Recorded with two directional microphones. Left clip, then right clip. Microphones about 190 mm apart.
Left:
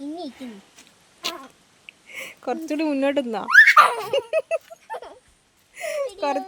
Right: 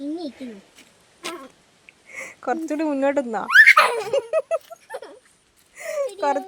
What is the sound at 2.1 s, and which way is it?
Giggle, 5° left (ahead or behind).